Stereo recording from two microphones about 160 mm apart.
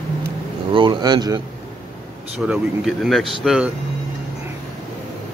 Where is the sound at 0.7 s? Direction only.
30° right (ahead or behind).